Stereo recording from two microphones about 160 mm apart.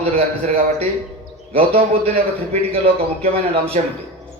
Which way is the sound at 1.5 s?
35° right (ahead or behind).